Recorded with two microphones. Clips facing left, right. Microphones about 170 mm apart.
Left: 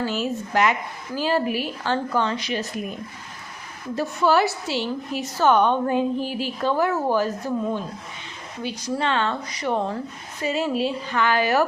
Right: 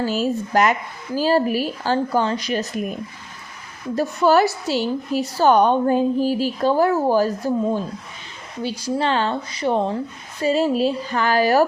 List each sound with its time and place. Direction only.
0.0 s a woman's voice: 40° right (ahead or behind)
3.9 s a woman's voice: 40° right (ahead or behind)